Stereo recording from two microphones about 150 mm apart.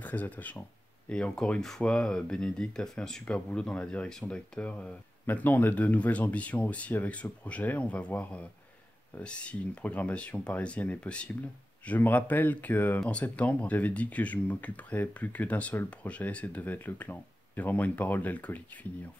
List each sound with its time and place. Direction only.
0.0 s speech: 10° left (ahead or behind)